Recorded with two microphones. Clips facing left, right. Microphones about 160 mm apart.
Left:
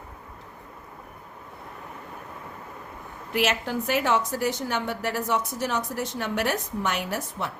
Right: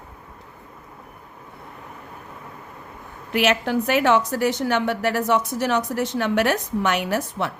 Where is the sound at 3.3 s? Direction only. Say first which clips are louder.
Right 5 dB; 70° right (ahead or behind).